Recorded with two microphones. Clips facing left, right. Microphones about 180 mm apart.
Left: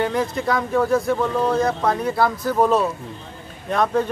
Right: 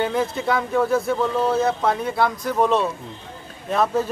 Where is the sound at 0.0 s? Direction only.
Centre (ahead or behind).